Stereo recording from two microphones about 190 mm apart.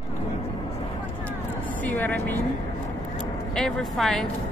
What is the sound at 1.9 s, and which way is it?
Speech, 10° left (ahead or behind).